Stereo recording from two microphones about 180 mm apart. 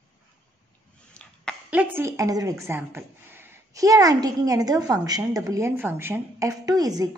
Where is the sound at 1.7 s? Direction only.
10° right (ahead or behind).